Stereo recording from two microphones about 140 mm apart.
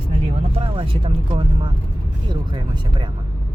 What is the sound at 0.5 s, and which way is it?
Speech, 40° right (ahead or behind).